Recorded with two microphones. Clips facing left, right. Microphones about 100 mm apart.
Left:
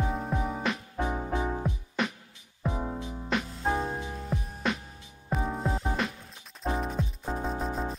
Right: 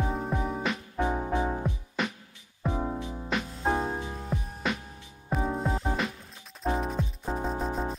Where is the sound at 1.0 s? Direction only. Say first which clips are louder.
Right 3 dB; 25° right (ahead or behind).